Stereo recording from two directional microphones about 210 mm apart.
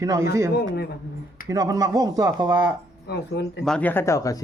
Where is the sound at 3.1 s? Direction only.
50° left (ahead or behind).